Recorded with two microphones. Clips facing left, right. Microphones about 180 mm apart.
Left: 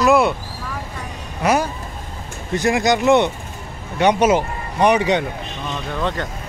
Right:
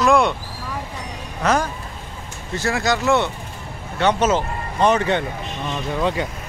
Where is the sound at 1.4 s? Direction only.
10° left (ahead or behind).